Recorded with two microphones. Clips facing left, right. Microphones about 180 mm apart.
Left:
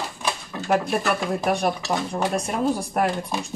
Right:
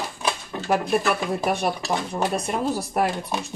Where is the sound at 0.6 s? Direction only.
Centre (ahead or behind).